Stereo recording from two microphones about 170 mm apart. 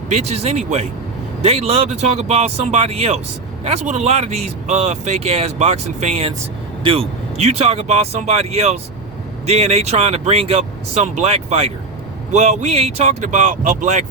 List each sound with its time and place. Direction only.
0.1 s speech: 40° right (ahead or behind)